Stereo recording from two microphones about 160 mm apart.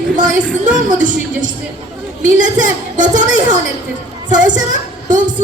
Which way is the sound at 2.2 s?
55° right (ahead or behind).